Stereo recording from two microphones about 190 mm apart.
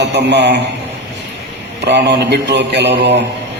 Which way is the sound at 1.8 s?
65° right (ahead or behind).